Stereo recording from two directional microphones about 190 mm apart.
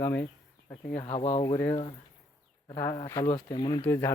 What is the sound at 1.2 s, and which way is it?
Speech, 30° left (ahead or behind).